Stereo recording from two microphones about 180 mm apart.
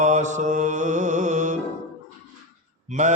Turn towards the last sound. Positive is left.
turn(degrees=-40)  # may be behind; listen again after turning